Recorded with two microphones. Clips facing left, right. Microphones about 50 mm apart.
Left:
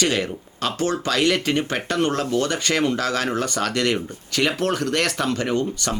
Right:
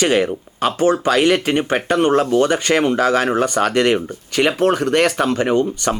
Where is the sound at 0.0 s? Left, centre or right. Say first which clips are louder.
Right 6 dB; right.